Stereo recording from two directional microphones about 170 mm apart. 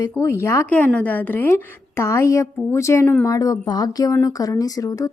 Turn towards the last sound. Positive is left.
turn(degrees=20)  # may be behind; listen again after turning